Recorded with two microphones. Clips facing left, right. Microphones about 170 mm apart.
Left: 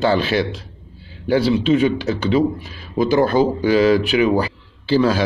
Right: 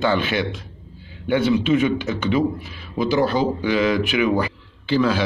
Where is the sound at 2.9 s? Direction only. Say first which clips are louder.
Left 4 dB; 45° left (ahead or behind).